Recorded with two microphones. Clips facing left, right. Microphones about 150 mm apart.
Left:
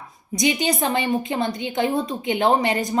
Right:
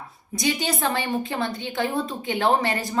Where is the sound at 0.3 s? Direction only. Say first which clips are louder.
Left 4 dB; 15° left (ahead or behind).